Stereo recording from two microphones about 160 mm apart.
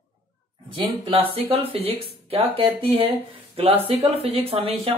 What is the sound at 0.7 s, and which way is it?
Speech, 30° right (ahead or behind).